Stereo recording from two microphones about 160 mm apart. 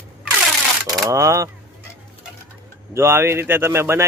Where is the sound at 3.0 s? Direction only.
15° right (ahead or behind).